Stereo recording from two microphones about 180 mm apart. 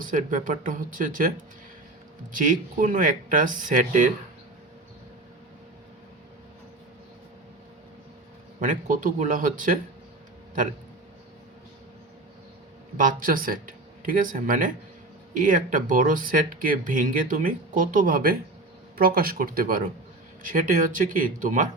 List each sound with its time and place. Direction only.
0.1 s speech: 45° right (ahead or behind)
2.3 s speech: 50° right (ahead or behind)
8.6 s speech: 45° right (ahead or behind)
13.0 s speech: 50° right (ahead or behind)